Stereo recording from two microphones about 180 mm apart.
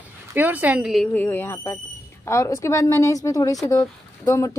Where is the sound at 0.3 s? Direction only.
10° right (ahead or behind).